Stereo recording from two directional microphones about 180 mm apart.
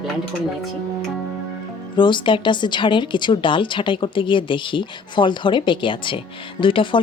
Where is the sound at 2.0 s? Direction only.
25° left (ahead or behind).